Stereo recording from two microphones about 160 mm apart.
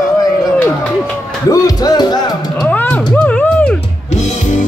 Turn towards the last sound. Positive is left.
turn(degrees=10)  # may be behind; listen again after turning